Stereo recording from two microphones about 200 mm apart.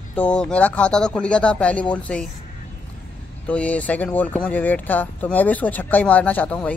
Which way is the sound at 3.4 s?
5° left (ahead or behind).